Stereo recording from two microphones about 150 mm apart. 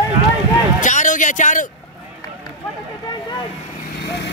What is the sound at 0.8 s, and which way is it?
Speech, 55° left (ahead or behind).